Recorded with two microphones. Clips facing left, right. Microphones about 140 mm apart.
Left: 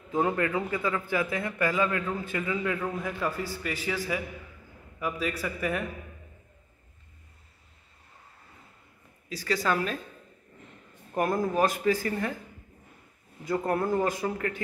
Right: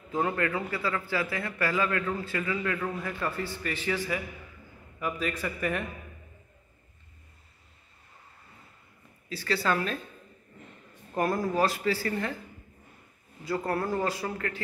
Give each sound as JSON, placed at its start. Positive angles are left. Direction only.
{"t": 0.1, "sound": "a man's voice", "side_deg": 15}
{"t": 9.3, "sound": "a man's voice", "side_deg": 15}
{"t": 11.1, "sound": "a man's voice", "side_deg": 20}
{"t": 13.5, "sound": "speech", "side_deg": 20}